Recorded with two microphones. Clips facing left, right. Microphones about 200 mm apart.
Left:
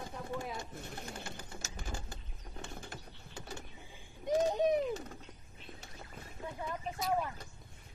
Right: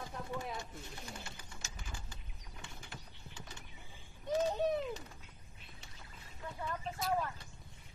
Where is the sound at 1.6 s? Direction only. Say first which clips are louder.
Left 5 dB; 45° left (ahead or behind).